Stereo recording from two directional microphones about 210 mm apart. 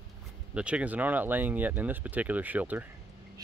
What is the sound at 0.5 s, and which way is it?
Speech, 5° right (ahead or behind).